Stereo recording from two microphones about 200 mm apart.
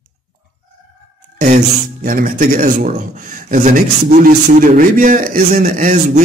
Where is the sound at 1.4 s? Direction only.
40° right (ahead or behind).